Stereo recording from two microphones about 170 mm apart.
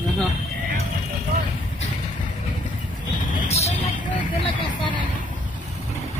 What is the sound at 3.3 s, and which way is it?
Vehicle, 45° left (ahead or behind).